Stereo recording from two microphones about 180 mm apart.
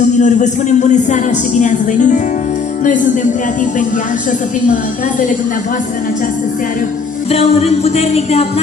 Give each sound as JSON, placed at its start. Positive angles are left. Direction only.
{"t": 0.2, "sound": "speech", "side_deg": 40}
{"t": 7.2, "sound": "music", "side_deg": 35}